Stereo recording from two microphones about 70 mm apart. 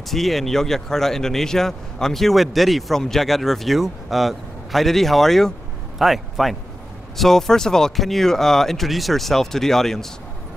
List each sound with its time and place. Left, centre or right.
0.1 s a man's voice: centre